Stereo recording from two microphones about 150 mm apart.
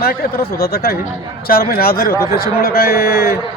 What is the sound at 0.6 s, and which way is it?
A man's voice, 90° left.